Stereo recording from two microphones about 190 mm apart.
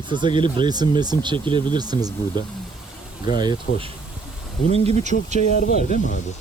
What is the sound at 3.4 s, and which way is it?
Speech, 25° right (ahead or behind).